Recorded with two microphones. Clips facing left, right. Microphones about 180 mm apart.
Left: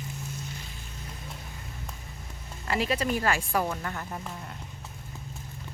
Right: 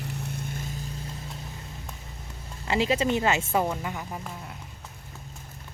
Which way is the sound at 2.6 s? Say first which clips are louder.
Right 3 dB; 25° right (ahead or behind).